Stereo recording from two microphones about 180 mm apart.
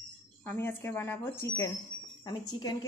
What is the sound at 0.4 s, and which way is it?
A woman's voice, 10° left (ahead or behind).